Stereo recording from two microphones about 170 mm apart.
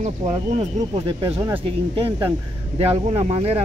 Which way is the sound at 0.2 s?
45° right (ahead or behind).